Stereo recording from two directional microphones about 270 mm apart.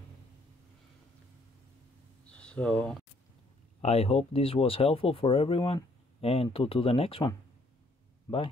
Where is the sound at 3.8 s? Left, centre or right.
Left.